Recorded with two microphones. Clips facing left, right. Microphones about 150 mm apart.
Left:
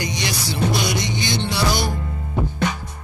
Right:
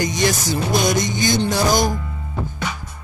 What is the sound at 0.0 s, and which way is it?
Music, 45° right (ahead or behind).